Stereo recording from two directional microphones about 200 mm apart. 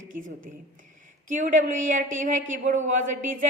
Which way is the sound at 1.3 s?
40° right (ahead or behind).